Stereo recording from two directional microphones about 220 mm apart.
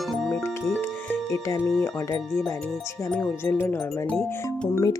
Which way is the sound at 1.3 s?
15° left (ahead or behind).